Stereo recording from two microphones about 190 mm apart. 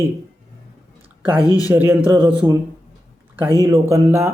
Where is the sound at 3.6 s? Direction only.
15° right (ahead or behind).